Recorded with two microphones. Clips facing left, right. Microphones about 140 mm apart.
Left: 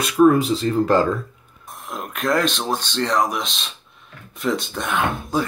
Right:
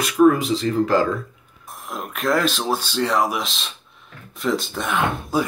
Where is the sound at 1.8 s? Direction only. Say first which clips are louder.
Even; centre (ahead or behind).